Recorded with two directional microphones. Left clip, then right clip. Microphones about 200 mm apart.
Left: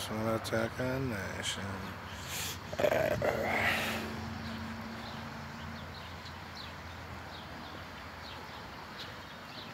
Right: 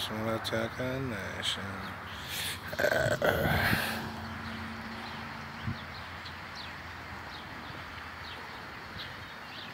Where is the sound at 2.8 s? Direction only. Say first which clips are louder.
Right 1 dB; 15° left (ahead or behind).